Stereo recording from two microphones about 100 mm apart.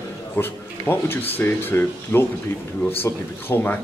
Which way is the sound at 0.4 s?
20° left (ahead or behind).